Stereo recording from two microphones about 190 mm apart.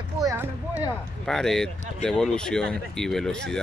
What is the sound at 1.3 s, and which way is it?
Speech, 5° left (ahead or behind).